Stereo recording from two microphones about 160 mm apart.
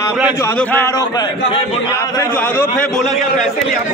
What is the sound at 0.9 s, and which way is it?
A man's voice, 25° left (ahead or behind).